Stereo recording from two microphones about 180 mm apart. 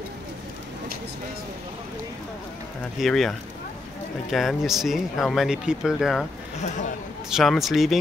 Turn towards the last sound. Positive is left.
turn(degrees=0)  # may be behind; listen again after turning